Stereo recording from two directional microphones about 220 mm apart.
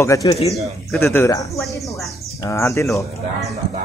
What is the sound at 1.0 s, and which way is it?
Speech, 10° left (ahead or behind).